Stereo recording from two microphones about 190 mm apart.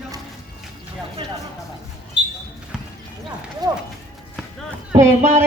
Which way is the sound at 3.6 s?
20° right (ahead or behind).